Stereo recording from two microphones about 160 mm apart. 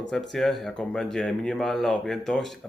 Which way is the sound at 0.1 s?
Centre (ahead or behind).